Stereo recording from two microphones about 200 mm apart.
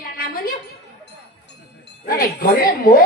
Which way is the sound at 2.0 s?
45° left (ahead or behind).